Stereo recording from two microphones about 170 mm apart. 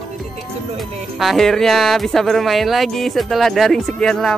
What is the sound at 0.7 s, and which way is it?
Speech, centre (ahead or behind).